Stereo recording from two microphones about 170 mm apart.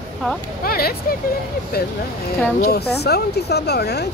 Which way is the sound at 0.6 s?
65° left (ahead or behind).